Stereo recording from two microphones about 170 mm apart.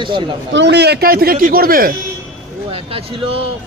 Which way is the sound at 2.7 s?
35° right (ahead or behind).